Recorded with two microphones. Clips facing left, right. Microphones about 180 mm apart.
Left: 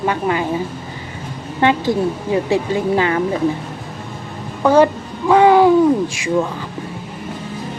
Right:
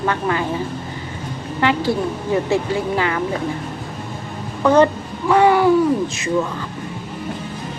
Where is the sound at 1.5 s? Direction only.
20° left (ahead or behind).